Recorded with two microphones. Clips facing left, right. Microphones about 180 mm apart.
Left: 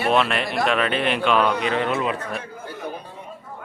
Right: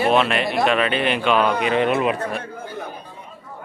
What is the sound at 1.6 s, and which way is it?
Speech, 15° right (ahead or behind).